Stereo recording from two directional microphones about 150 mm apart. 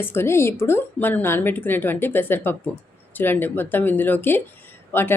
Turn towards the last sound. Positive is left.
turn(degrees=15)  # may be behind; listen again after turning